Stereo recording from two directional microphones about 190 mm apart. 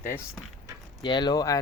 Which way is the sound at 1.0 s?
25° left (ahead or behind).